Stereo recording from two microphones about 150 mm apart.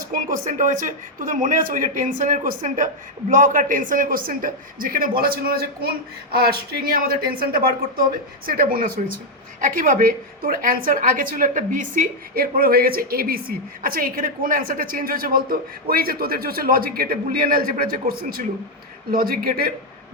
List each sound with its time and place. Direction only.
0.0 s speech: 70° right (ahead or behind)
9.6 s speech: 65° right (ahead or behind); by 19.7 s 85° right